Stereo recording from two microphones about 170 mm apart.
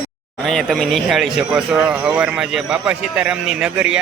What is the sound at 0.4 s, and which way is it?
Speech, centre (ahead or behind).